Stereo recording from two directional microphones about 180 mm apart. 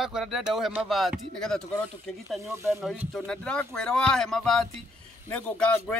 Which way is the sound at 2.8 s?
5° right (ahead or behind).